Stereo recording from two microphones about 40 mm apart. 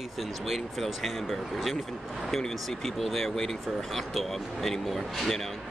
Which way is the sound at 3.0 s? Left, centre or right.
Centre.